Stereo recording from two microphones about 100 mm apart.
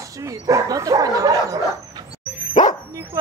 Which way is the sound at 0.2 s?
35° right (ahead or behind).